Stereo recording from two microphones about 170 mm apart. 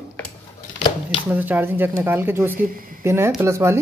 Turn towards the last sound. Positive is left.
turn(degrees=-15)  # may be behind; listen again after turning